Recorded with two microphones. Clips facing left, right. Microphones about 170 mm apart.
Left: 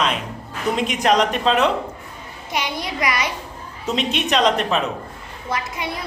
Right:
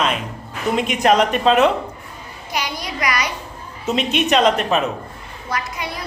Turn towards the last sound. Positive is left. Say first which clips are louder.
# even
turn(degrees=25)  # may be behind; listen again after turning